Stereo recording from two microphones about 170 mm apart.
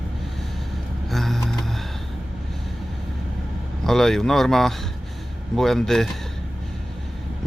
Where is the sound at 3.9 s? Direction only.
Centre (ahead or behind).